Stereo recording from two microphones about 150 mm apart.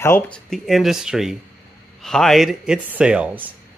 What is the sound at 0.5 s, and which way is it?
Speech, centre (ahead or behind).